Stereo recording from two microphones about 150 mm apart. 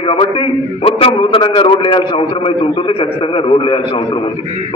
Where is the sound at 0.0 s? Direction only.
40° left (ahead or behind).